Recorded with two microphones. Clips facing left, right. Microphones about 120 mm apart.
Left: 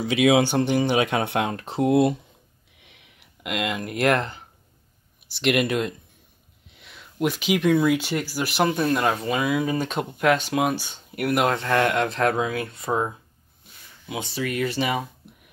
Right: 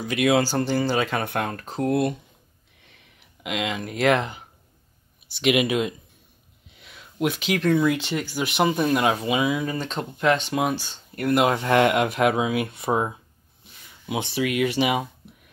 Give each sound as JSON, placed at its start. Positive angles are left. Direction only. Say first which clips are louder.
{"t": 0.2, "sound": "speech", "louder": "left 2 dB", "side_deg": 20}
{"t": 1.8, "sound": "speech", "louder": "left 4 dB", "side_deg": 25}
{"t": 2.8, "sound": "a sound", "louder": "left 1 dB", "side_deg": 5}
{"t": 5.3, "sound": "speech", "louder": "right 1 dB", "side_deg": 0}
{"t": 9.6, "sound": "speech", "louder": "left 3 dB", "side_deg": 10}
{"t": 11.5, "sound": "speech", "louder": "right 2 dB", "side_deg": -15}
{"t": 14.4, "sound": "speech", "louder": "right 3 dB", "side_deg": -10}